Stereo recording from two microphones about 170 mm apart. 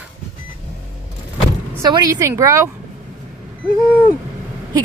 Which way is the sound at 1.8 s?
20° right (ahead or behind).